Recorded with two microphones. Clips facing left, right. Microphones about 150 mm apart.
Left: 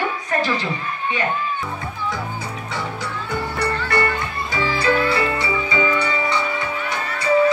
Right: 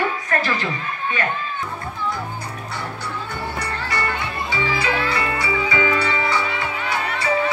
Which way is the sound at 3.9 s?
50° left (ahead or behind).